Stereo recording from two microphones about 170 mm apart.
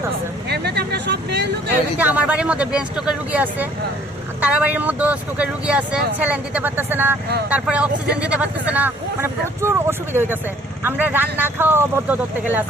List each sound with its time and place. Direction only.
0.4 s speech: 75° right (ahead or behind)
2.0 s speech: 10° right (ahead or behind)